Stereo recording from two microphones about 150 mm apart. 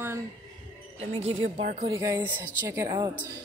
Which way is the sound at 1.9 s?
25° right (ahead or behind).